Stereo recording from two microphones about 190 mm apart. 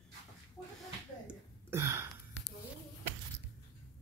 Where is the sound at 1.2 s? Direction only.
15° right (ahead or behind).